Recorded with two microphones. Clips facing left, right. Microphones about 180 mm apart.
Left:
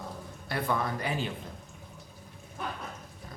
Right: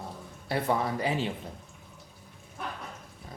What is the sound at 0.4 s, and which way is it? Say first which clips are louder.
Speech: right 3 dB; 25° right (ahead or behind).